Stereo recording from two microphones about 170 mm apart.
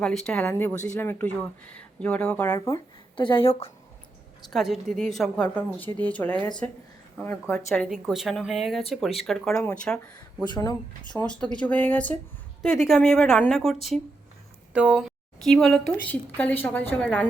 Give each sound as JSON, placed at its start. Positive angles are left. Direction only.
{"t": 0.0, "sound": "speech", "side_deg": 5}
{"t": 3.4, "sound": "a woman's voice", "side_deg": 35}
{"t": 4.4, "sound": "speech", "side_deg": 0}
{"t": 7.7, "sound": "speech", "side_deg": 0}
{"t": 10.5, "sound": "speech", "side_deg": 25}
{"t": 11.2, "sound": "speech", "side_deg": 5}